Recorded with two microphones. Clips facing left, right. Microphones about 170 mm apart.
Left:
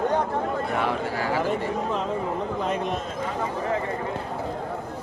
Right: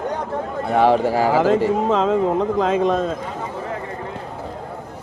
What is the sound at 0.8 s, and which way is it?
Speech, 90° right.